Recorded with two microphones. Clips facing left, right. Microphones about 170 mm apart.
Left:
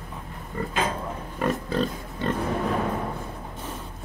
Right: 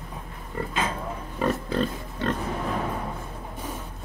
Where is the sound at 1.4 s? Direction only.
Centre (ahead or behind).